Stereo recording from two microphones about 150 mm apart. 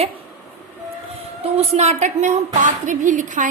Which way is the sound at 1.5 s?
40° right (ahead or behind).